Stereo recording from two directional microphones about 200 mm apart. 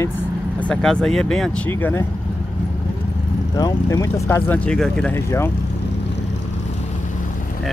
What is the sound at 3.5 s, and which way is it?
Speech, 20° left (ahead or behind).